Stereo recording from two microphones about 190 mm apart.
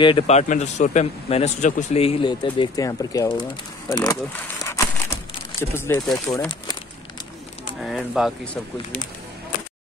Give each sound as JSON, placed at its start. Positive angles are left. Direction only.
{"t": 0.0, "sound": "a man's voice", "side_deg": 25}
{"t": 0.4, "sound": "a man's voice", "side_deg": 40}
{"t": 4.6, "sound": "a sound", "side_deg": 15}
{"t": 6.1, "sound": "speech", "side_deg": 15}
{"t": 7.8, "sound": "speech", "side_deg": 0}